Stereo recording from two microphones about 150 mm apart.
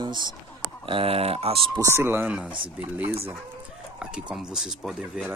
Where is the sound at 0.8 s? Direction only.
40° right (ahead or behind).